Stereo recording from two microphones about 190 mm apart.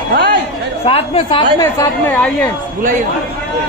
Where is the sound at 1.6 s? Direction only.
15° left (ahead or behind).